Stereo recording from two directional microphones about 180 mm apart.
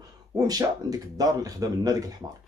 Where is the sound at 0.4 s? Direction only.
20° right (ahead or behind).